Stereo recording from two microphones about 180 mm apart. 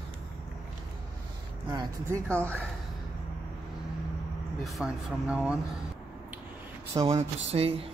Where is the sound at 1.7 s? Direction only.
15° right (ahead or behind).